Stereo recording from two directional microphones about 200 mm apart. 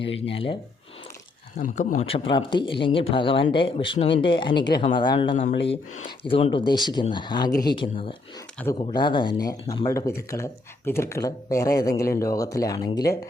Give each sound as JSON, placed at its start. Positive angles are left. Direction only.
{"t": 0.0, "sound": "speech", "side_deg": 65}
{"t": 0.3, "sound": "speech", "side_deg": 25}
{"t": 1.5, "sound": "speech", "side_deg": 40}
{"t": 2.0, "sound": "speech", "side_deg": 30}
{"t": 8.6, "sound": "speech", "side_deg": 5}
{"t": 9.0, "sound": "speech", "side_deg": 25}